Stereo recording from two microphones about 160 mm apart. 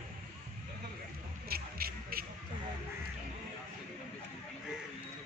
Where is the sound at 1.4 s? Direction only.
70° right (ahead or behind).